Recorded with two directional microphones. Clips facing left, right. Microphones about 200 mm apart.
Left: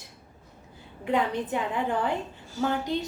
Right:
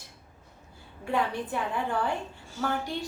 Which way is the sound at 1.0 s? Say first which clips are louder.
Left 3 dB; 20° left (ahead or behind).